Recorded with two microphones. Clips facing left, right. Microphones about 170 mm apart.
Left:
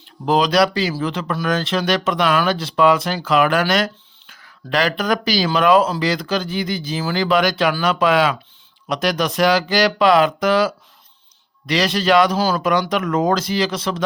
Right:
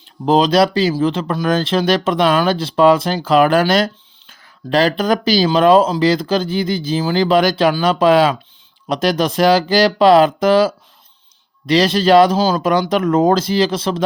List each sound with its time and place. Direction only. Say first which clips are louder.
0.3 s speech: right 3 dB; 25° right (ahead or behind)